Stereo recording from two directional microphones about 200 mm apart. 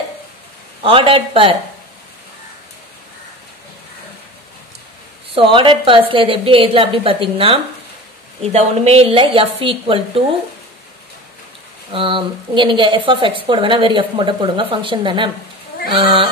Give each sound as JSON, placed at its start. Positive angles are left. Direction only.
{"t": 0.8, "sound": "speech", "side_deg": -25}
{"t": 5.3, "sound": "speech", "side_deg": -25}
{"t": 11.9, "sound": "speech", "side_deg": -25}